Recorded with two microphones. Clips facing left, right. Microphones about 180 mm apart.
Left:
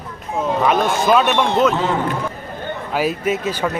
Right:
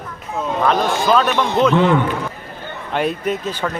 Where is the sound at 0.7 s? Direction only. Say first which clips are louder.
Even; 5° left (ahead or behind).